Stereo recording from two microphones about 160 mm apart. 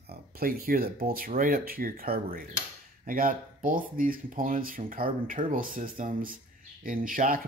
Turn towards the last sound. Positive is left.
turn(degrees=-60)  # may be behind; listen again after turning